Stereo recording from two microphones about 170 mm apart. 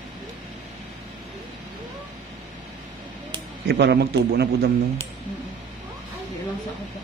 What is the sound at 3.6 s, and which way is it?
Speech, 75° right (ahead or behind).